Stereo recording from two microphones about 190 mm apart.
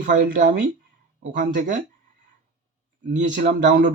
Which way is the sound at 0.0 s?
45° right (ahead or behind).